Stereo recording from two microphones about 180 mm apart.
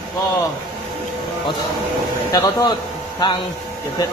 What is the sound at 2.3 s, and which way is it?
A man's voice, 20° left (ahead or behind).